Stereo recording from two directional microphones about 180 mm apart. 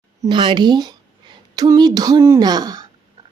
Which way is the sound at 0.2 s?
25° right (ahead or behind).